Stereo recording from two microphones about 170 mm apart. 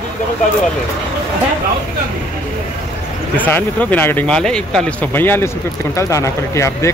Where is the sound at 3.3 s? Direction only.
10° left (ahead or behind).